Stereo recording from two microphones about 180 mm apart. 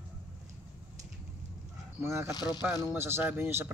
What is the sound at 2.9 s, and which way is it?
Speech, 15° right (ahead or behind).